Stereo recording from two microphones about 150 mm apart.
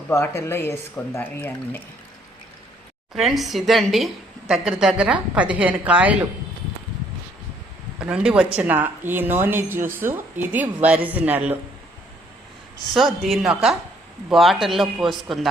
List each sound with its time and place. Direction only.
0.1 s speech: 15° left (ahead or behind)
3.2 s a woman's voice: centre (ahead or behind)
7.9 s speech: 5° right (ahead or behind)
12.9 s a woman's voice: centre (ahead or behind)